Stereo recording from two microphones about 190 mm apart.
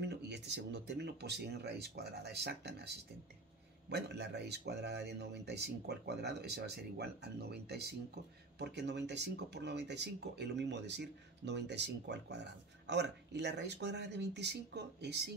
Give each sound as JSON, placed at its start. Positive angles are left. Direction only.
{"t": 0.0, "sound": "speech", "side_deg": -65}
{"t": 3.9, "sound": "speech", "side_deg": -65}